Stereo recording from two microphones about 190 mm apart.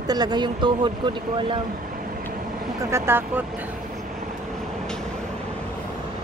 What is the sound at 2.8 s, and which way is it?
Speech, 15° right (ahead or behind).